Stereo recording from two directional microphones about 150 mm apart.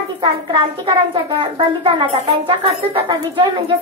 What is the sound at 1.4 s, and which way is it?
A child's voice, 35° right (ahead or behind).